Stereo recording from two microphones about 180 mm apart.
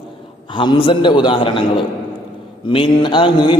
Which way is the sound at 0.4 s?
25° left (ahead or behind).